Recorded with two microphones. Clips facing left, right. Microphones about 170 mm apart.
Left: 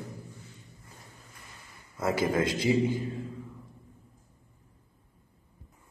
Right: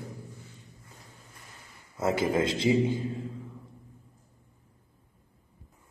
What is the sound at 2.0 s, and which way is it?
Speech, 25° right (ahead or behind).